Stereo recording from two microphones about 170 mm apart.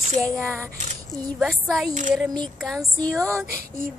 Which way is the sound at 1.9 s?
50° right (ahead or behind).